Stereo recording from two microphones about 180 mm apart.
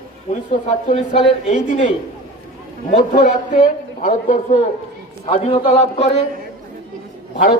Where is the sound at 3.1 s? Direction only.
45° left (ahead or behind).